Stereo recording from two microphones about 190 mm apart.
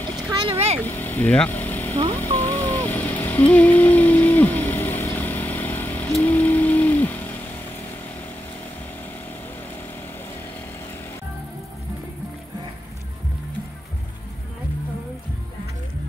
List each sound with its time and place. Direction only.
0.3 s boat: 20° right (ahead or behind)
0.7 s speech: 10° left (ahead or behind)
2.3 s a sound: 10° left (ahead or behind)